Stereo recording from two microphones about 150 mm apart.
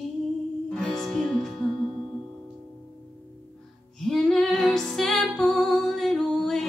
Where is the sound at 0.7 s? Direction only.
5° left (ahead or behind).